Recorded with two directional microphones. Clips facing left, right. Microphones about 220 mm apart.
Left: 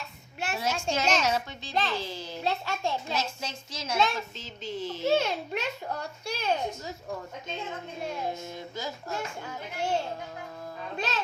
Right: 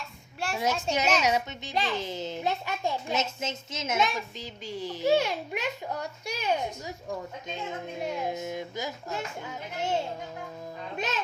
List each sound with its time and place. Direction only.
0.6 s a child's voice: 20° right (ahead or behind)
8.0 s a child's voice: 15° right (ahead or behind)